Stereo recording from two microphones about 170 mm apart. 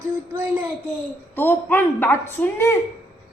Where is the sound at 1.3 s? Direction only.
10° left (ahead or behind).